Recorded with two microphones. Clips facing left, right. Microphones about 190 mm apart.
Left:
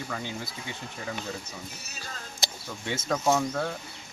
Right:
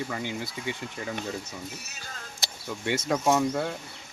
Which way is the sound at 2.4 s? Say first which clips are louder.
Left 5 dB; 20° left (ahead or behind).